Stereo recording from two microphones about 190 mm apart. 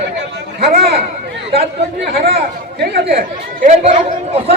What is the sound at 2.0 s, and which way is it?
Speech, 55° right (ahead or behind).